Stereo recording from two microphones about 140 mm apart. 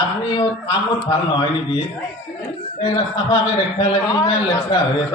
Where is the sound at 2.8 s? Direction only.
35° left (ahead or behind).